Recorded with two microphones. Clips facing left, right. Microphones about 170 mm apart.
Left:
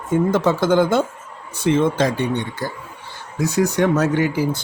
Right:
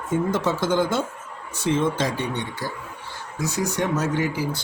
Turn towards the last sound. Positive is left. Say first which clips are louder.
# left 5 dB
turn(degrees=60)  # may be behind; listen again after turning